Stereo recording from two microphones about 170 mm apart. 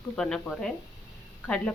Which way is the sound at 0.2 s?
5° left (ahead or behind).